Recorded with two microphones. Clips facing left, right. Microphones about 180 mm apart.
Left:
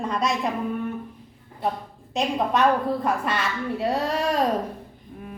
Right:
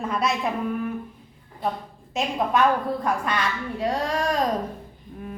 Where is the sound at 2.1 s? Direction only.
Centre (ahead or behind).